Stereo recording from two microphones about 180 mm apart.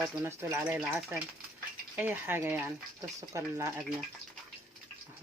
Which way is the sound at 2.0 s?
10° right (ahead or behind).